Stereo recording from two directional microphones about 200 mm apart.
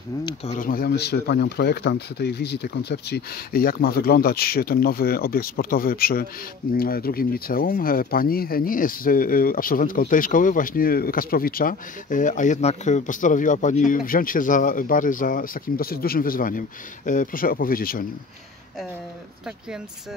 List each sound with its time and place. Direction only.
0.5 s speech: 45° left (ahead or behind)